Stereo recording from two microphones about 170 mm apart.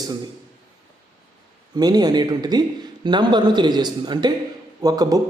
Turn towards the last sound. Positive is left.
turn(degrees=-20)  # may be behind; listen again after turning